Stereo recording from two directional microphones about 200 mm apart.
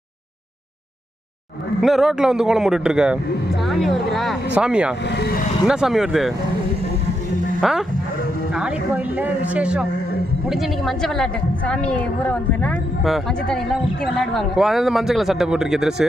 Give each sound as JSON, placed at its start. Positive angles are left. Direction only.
{"t": 1.8, "sound": "a woman's voice", "side_deg": 0}
{"t": 5.0, "sound": "speech", "side_deg": 55}
{"t": 5.7, "sound": "a woman's voice", "side_deg": 0}
{"t": 7.6, "sound": "a woman's voice", "side_deg": 0}